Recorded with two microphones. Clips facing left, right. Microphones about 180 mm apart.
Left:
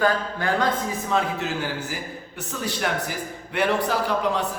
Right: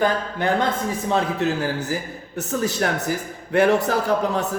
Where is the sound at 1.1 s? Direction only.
40° right (ahead or behind).